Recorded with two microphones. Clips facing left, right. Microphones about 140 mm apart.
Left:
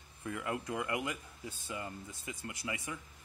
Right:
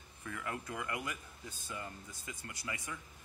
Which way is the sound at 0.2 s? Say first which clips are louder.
Left 4 dB; 20° left (ahead or behind).